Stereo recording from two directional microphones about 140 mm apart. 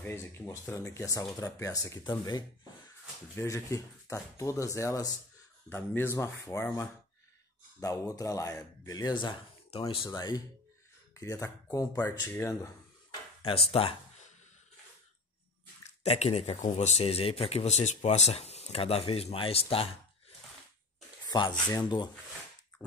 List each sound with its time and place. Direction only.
0.0 s a man's voice: 20° left (ahead or behind)
13.4 s speech: 40° left (ahead or behind)
15.8 s speech: 55° left (ahead or behind)
21.3 s speech: 30° left (ahead or behind)
22.8 s dog: 30° left (ahead or behind)